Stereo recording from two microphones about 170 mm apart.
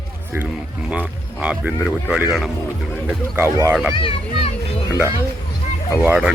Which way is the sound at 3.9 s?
30° left (ahead or behind).